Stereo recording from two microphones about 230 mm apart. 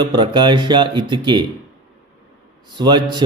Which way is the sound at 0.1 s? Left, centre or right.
Centre.